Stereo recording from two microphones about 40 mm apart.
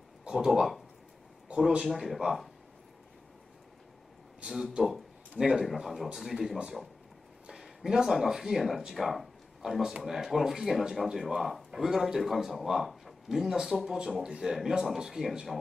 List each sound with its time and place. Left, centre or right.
0.5 s speech: centre
1.5 s a sound: right
1.9 s speech: centre
5.4 s speech: centre
7.8 s speech: centre